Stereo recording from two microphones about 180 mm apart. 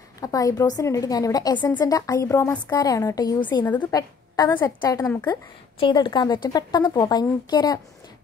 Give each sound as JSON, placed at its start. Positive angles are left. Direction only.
{"t": 0.2, "sound": "a woman's voice", "side_deg": 20}